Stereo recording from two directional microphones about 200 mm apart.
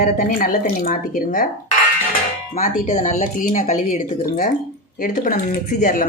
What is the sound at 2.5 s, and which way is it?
Speech, 35° left (ahead or behind).